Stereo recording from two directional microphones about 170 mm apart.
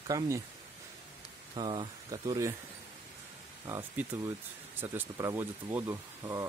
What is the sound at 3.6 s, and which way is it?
Speech, 15° right (ahead or behind).